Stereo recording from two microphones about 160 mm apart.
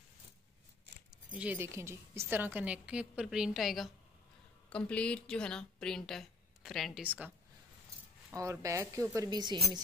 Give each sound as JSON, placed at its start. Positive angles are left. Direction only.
{"t": 1.3, "sound": "a woman's voice", "side_deg": -10}
{"t": 8.4, "sound": "a woman's voice", "side_deg": -20}